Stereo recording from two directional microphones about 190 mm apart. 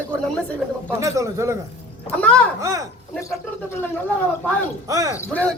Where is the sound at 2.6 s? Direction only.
20° right (ahead or behind).